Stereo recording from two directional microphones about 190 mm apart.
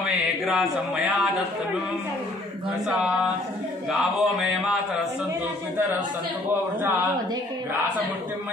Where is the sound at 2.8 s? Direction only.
5° right (ahead or behind).